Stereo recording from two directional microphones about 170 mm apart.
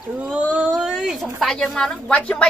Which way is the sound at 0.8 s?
5° right (ahead or behind).